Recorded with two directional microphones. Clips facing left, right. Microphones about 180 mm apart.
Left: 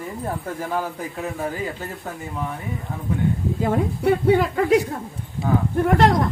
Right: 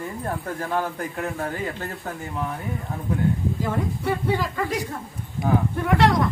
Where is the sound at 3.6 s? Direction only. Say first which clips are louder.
Left 5 dB; 60° left (ahead or behind).